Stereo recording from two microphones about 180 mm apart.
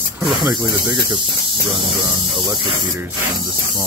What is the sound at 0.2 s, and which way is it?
Speech, 25° right (ahead or behind).